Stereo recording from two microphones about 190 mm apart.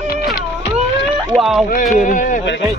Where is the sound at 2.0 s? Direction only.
40° left (ahead or behind).